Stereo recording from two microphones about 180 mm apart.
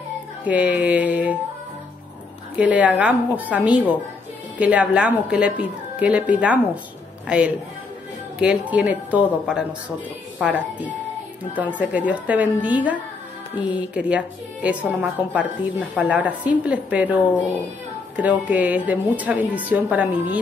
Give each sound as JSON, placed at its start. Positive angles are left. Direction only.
{"t": 0.5, "sound": "a woman's voice", "side_deg": -10}
{"t": 2.6, "sound": "a woman's voice", "side_deg": -10}
{"t": 18.1, "sound": "a woman's voice", "side_deg": -10}